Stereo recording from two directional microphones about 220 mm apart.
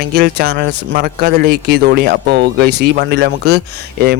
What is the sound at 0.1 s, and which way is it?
A man's voice, 45° right (ahead or behind).